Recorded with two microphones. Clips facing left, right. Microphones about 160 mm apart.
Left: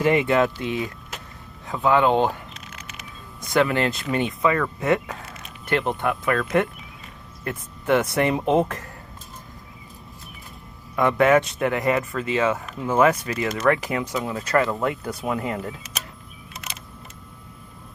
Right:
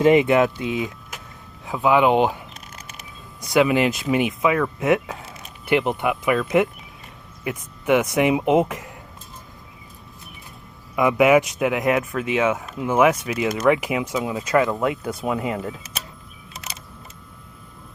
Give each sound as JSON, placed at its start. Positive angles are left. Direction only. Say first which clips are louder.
{"t": 0.0, "sound": "speech", "louder": "right 4 dB", "side_deg": -20}
{"t": 1.1, "sound": "a sound", "louder": "left 1 dB", "side_deg": -10}
{"t": 1.6, "sound": "speech", "louder": "right 2 dB", "side_deg": -10}
{"t": 3.5, "sound": "speech", "louder": "right 3 dB", "side_deg": -15}
{"t": 10.9, "sound": "speech", "louder": "right 2 dB", "side_deg": -10}